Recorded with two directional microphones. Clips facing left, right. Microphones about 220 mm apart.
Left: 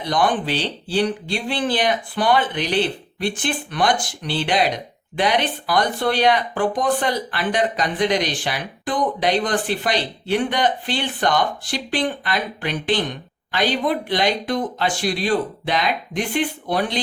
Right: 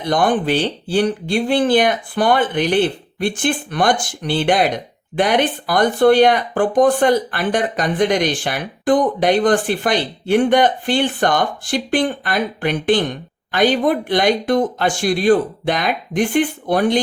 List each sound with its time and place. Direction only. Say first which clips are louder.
0.1 s speech: right 4 dB; 50° right (ahead or behind)